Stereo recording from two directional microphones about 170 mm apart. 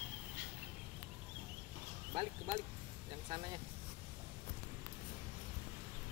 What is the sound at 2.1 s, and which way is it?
Speech, 30° right (ahead or behind).